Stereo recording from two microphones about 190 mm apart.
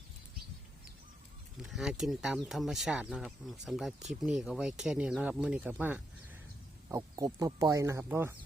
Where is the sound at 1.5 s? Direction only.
Centre (ahead or behind).